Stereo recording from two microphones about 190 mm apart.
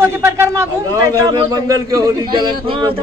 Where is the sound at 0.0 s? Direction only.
15° right (ahead or behind).